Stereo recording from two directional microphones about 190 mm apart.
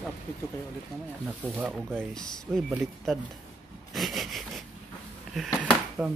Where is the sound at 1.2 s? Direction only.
5° right (ahead or behind).